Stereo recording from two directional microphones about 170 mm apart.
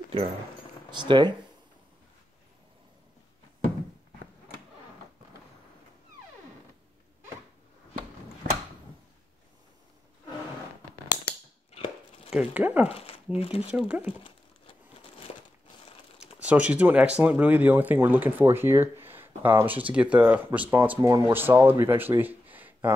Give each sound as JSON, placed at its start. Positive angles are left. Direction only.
{"t": 0.9, "sound": "speech", "side_deg": -25}
{"t": 12.3, "sound": "speech", "side_deg": -5}
{"t": 12.8, "sound": "speech", "side_deg": 35}
{"t": 13.7, "sound": "speech", "side_deg": -5}
{"t": 14.2, "sound": "crumpling", "side_deg": 30}
{"t": 16.3, "sound": "speech", "side_deg": -10}